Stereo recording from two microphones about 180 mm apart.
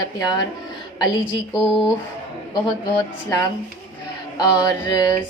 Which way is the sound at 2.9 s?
15° left (ahead or behind).